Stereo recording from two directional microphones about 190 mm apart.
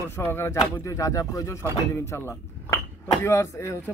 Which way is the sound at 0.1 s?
15° left (ahead or behind).